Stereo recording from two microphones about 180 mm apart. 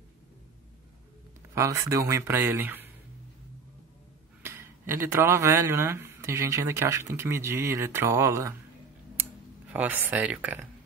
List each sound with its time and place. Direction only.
1.5 s speech: 15° right (ahead or behind)
4.4 s speech: 15° right (ahead or behind)
9.1 s a sound: 10° right (ahead or behind)